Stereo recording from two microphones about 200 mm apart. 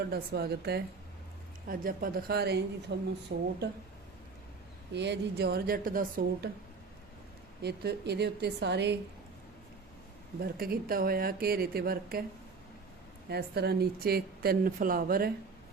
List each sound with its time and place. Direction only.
0.1 s a woman's voice: 50° right (ahead or behind)
4.9 s speech: 55° right (ahead or behind)
7.6 s a woman's voice: 55° right (ahead or behind)
10.4 s speech: 45° right (ahead or behind)
13.3 s speech: 50° right (ahead or behind)